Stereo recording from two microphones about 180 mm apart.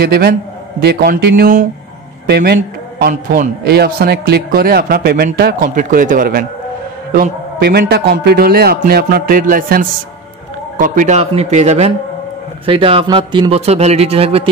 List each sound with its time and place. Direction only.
0.0 s a man's voice: 60° right (ahead or behind)
2.2 s a man's voice: 65° right (ahead or behind); by 14.5 s 30° right (ahead or behind)